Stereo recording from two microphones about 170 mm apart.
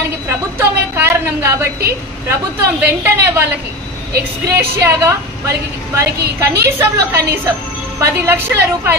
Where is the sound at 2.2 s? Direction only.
15° right (ahead or behind).